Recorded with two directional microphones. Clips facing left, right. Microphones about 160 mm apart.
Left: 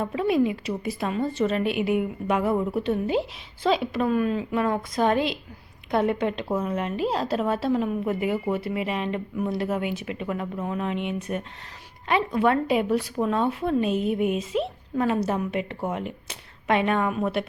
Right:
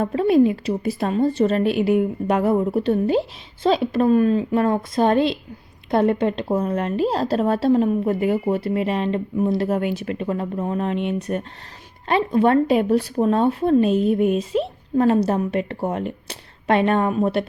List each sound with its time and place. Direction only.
0.0 s a woman's voice: 40° right (ahead or behind)